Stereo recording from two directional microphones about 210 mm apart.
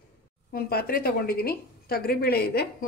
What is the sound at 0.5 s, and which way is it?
A woman's voice, 45° left (ahead or behind).